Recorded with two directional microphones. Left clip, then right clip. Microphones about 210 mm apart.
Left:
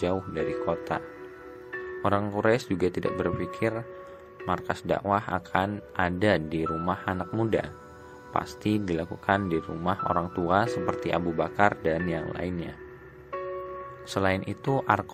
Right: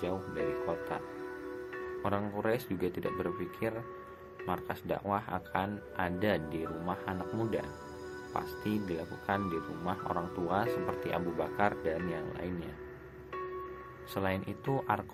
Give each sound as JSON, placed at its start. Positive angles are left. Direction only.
{"t": 0.6, "sound": "speech", "side_deg": 30}
{"t": 14.1, "sound": "speech", "side_deg": 30}